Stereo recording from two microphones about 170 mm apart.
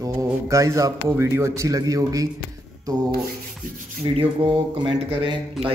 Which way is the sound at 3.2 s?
50° right (ahead or behind).